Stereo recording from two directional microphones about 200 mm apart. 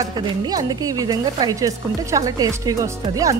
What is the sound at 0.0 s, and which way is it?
Speech, 20° right (ahead or behind).